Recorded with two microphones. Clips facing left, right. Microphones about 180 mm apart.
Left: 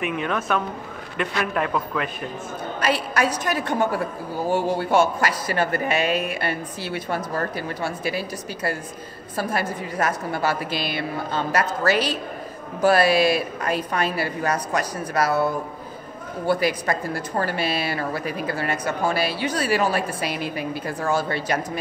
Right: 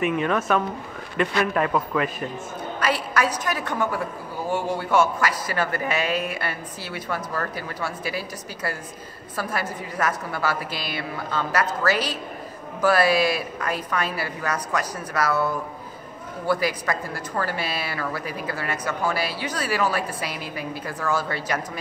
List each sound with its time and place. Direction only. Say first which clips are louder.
0.0 s a man's voice: right 3 dB; centre (ahead or behind)
2.8 s a woman's voice: left 1 dB; 25° left (ahead or behind)